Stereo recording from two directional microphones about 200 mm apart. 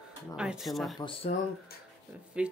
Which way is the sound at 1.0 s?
25° left (ahead or behind).